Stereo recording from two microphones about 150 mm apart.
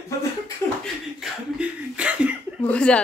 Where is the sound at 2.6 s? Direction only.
10° left (ahead or behind).